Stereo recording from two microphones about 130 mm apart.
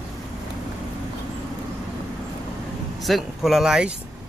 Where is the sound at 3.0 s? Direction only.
Centre (ahead or behind).